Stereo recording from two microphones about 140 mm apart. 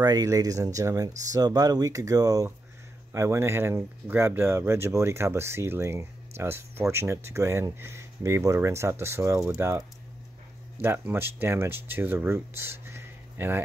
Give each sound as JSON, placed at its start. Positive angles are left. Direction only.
{"t": 0.0, "sound": "speech", "side_deg": -25}